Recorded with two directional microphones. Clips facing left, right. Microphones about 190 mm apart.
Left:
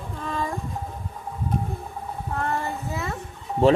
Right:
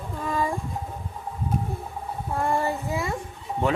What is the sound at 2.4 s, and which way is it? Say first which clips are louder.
Child singing: right 4 dB; 10° right (ahead or behind).